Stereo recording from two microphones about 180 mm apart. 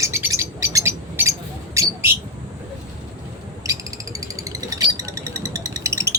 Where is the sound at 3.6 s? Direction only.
20° right (ahead or behind).